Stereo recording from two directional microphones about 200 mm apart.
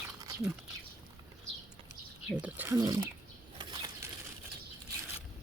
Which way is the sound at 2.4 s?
10° right (ahead or behind).